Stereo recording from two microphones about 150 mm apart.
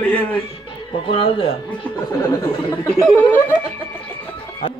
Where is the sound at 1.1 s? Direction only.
35° left (ahead or behind).